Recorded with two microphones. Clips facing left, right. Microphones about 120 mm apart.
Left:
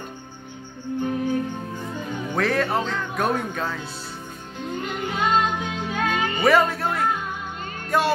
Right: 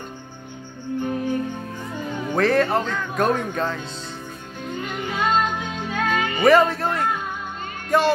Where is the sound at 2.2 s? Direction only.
Centre (ahead or behind).